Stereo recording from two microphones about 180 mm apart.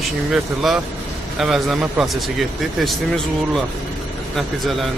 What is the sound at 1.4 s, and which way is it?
Speech, centre (ahead or behind).